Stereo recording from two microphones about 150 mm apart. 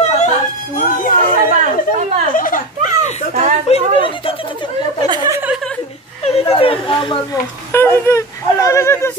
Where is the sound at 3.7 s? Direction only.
45° left (ahead or behind).